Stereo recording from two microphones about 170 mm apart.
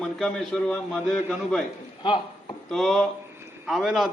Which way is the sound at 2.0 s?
25° left (ahead or behind).